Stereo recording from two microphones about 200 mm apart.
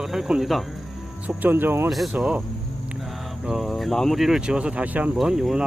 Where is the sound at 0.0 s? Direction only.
Centre (ahead or behind).